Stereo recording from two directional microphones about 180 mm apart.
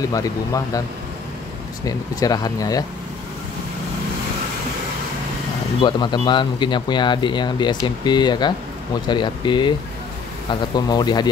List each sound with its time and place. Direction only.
0.0 s speech: 20° left (ahead or behind)
1.9 s speech: 20° left (ahead or behind)
5.8 s speech: 25° left (ahead or behind)